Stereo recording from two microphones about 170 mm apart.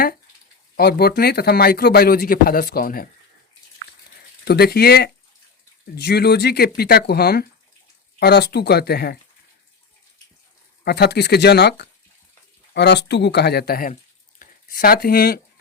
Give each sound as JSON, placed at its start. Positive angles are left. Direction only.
{"t": 0.8, "sound": "a man's voice", "side_deg": 65}
{"t": 4.4, "sound": "speech", "side_deg": 70}
{"t": 10.8, "sound": "speech", "side_deg": 75}
{"t": 13.9, "sound": "a sound", "side_deg": 50}